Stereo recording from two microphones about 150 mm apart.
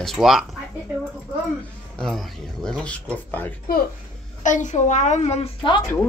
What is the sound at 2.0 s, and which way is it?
Speech, 5° left (ahead or behind).